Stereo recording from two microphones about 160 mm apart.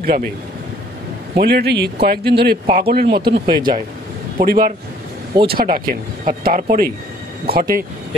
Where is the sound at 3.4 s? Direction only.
30° right (ahead or behind).